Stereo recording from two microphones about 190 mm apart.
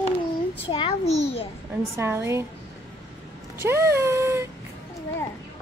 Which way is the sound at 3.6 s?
15° right (ahead or behind).